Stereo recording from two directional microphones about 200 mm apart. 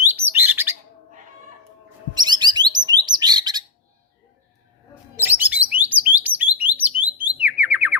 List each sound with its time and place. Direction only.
0.1 s bird: 10° right (ahead or behind)
2.1 s bird: 20° right (ahead or behind)
5.2 s alarm: 10° right (ahead or behind)
7.0 s music: 10° right (ahead or behind)